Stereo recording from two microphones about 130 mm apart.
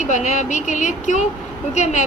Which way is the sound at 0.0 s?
70° left (ahead or behind).